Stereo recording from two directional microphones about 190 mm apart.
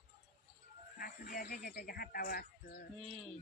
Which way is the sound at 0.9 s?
50° left (ahead or behind).